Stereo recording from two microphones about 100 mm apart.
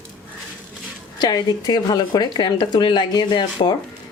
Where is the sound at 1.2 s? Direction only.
40° left (ahead or behind).